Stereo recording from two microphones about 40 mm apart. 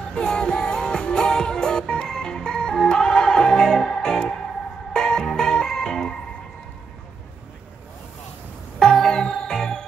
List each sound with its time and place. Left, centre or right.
0.1 s music: centre
8.7 s music: centre